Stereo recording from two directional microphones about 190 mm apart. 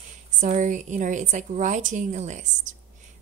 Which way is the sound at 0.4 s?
40° right (ahead or behind).